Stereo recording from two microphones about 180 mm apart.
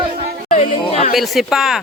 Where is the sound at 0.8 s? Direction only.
35° left (ahead or behind).